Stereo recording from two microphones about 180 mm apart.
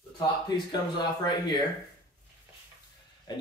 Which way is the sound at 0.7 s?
25° left (ahead or behind).